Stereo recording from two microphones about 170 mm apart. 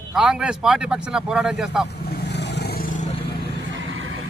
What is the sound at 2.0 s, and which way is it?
Vehicle, 85° left.